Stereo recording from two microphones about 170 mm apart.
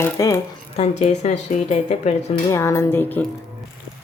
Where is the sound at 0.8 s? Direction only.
40° left (ahead or behind).